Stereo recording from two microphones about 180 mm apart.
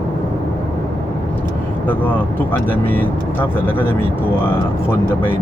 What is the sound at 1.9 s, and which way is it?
Speech, 10° left (ahead or behind).